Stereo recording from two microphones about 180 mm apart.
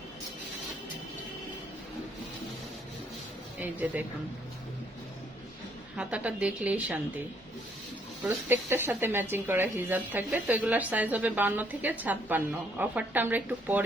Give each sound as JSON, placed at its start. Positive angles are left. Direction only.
{"t": 3.6, "sound": "speech", "side_deg": -10}
{"t": 6.0, "sound": "speech", "side_deg": -5}
{"t": 8.2, "sound": "speech", "side_deg": -10}